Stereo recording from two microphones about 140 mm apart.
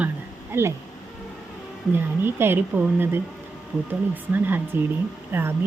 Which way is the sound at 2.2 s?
15° right (ahead or behind).